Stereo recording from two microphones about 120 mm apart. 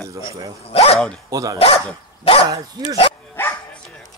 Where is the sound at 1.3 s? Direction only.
30° right (ahead or behind).